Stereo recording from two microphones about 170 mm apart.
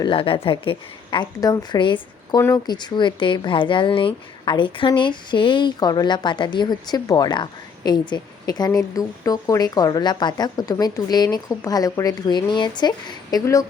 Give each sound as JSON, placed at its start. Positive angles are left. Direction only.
{"t": 0.0, "sound": "speech", "side_deg": 30}